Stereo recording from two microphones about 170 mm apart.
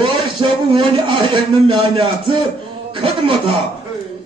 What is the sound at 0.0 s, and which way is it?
A man's voice, 30° right (ahead or behind).